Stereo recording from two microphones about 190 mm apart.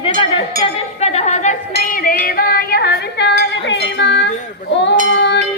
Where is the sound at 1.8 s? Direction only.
45° left (ahead or behind).